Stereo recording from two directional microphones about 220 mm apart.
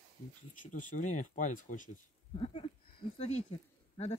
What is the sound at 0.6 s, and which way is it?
Speech, 35° left (ahead or behind).